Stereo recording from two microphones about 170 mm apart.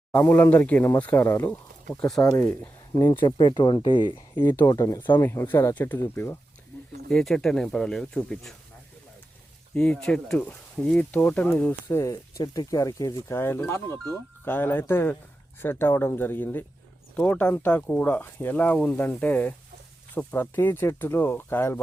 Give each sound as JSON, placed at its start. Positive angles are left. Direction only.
{"t": 0.1, "sound": "speech", "side_deg": 15}
{"t": 3.0, "sound": "speech", "side_deg": 25}
{"t": 5.2, "sound": "speech", "side_deg": 15}
{"t": 7.1, "sound": "speech", "side_deg": 5}
{"t": 9.7, "sound": "speech", "side_deg": 5}